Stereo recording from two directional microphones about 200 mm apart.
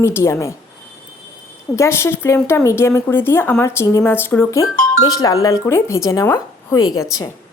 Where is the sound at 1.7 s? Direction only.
15° left (ahead or behind).